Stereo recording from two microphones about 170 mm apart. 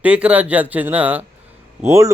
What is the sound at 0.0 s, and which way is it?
Speech, 5° right (ahead or behind).